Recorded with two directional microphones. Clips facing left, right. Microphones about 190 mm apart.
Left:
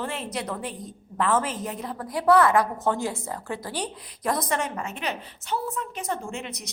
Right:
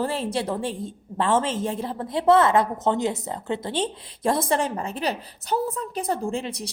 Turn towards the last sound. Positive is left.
turn(degrees=-30)  # may be behind; listen again after turning